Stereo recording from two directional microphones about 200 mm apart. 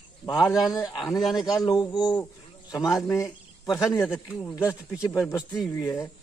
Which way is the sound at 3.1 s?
15° left (ahead or behind).